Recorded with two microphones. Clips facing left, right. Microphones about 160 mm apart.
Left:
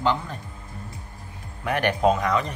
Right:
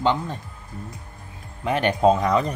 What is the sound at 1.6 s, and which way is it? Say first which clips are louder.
Speech: right 2 dB; 25° right (ahead or behind).